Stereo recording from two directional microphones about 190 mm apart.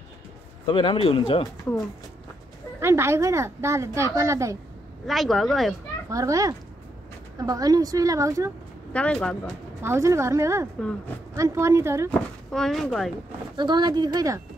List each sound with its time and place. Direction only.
0.7 s speech: 25° left (ahead or behind)
2.8 s a woman's voice: 15° right (ahead or behind)
5.0 s speech: centre (ahead or behind)
6.0 s a woman's voice: 15° right (ahead or behind)
8.9 s speech: 5° left (ahead or behind)
9.8 s a woman's voice: 15° right (ahead or behind)
10.8 s speech: 5° left (ahead or behind)
11.3 s a woman's voice: 15° right (ahead or behind)
12.1 s speech: 5° left (ahead or behind)
13.6 s speech: 25° right (ahead or behind)